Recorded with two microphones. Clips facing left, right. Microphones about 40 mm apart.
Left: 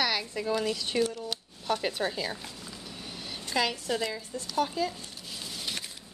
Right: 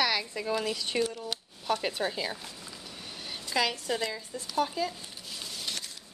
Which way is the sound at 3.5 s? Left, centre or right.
Centre.